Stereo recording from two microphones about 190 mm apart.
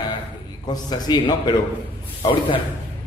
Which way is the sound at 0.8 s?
20° left (ahead or behind).